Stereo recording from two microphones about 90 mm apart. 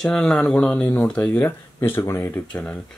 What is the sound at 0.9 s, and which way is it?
Speech, 10° left (ahead or behind).